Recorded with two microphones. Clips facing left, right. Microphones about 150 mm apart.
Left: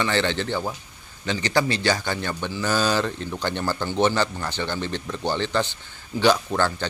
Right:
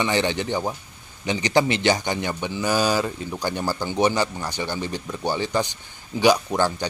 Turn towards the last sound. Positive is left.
turn(degrees=-15)  # may be behind; listen again after turning